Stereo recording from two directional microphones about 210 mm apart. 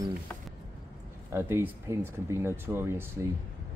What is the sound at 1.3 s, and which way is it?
Speech, 10° right (ahead or behind).